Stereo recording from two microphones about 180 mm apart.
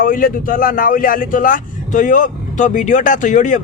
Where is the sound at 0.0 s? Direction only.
50° left (ahead or behind).